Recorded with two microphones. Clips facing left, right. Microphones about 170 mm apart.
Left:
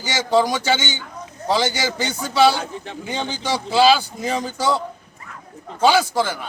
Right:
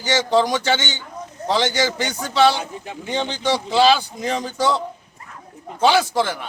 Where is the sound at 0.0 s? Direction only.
5° left (ahead or behind).